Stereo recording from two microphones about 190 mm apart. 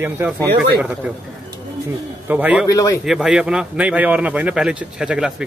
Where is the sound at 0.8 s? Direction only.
10° right (ahead or behind).